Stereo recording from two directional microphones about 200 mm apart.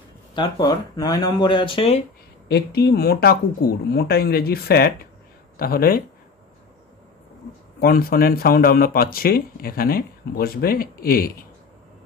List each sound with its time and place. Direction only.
0.4 s speech: 20° left (ahead or behind)
2.4 s speech: 55° left (ahead or behind)
7.8 s speech: 50° left (ahead or behind)